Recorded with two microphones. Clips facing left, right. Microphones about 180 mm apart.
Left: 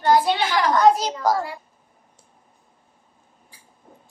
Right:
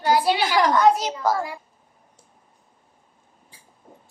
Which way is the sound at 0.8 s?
40° left (ahead or behind).